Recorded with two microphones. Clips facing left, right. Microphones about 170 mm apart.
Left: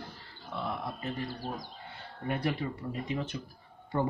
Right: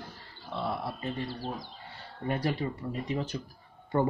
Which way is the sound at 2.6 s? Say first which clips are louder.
Right 2 dB; 25° right (ahead or behind).